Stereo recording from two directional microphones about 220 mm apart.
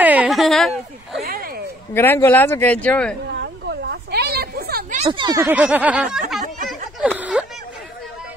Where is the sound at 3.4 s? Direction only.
45° right (ahead or behind).